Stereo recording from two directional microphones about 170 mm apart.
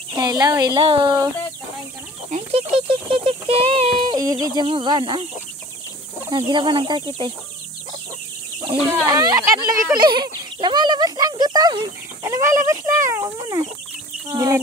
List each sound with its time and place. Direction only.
0.1 s a child's voice: 25° right (ahead or behind)
2.3 s a sound: 35° right (ahead or behind)
6.3 s a child's voice: 25° right (ahead or behind)
8.9 s a child's voice: 25° right (ahead or behind)